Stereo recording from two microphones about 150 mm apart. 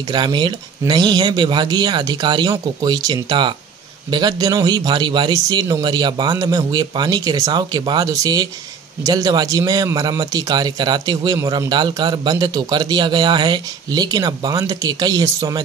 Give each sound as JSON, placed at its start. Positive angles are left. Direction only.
{"t": 0.1, "sound": "a man's voice", "side_deg": -30}